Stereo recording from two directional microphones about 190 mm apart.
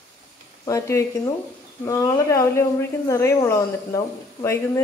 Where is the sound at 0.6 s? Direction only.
15° left (ahead or behind).